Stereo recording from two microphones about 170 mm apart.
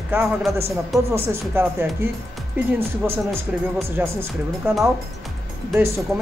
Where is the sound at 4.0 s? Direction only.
10° right (ahead or behind).